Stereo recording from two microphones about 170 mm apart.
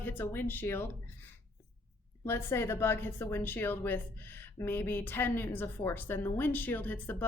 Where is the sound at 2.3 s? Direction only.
15° left (ahead or behind).